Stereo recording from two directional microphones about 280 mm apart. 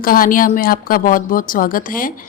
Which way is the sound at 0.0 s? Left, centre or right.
Left.